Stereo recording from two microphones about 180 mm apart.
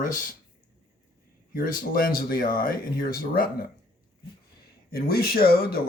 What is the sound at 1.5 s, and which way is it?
Speech, 50° left (ahead or behind).